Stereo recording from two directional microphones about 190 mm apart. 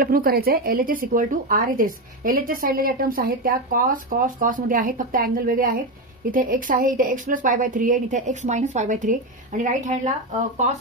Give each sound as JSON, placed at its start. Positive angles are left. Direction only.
{"t": 0.0, "sound": "a woman's voice", "side_deg": -50}